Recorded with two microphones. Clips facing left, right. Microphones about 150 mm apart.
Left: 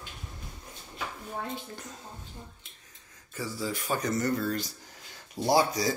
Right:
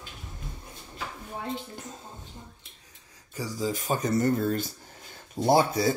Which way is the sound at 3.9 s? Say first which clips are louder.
Right 3 dB; 25° right (ahead or behind).